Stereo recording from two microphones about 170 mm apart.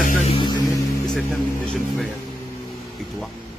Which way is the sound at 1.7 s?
Centre (ahead or behind).